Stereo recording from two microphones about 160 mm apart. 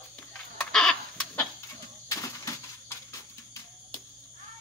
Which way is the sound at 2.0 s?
20° left (ahead or behind).